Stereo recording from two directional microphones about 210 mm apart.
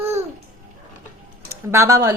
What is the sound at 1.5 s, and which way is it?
Speech, 15° right (ahead or behind).